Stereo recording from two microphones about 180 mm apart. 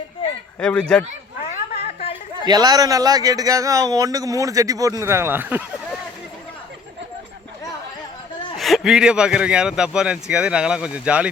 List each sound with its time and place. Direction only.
0.6 s a man's voice: 5° left (ahead or behind)
1.5 s a sound: 35° left (ahead or behind)
2.5 s speech: 20° right (ahead or behind)
8.5 s a man's voice: centre (ahead or behind)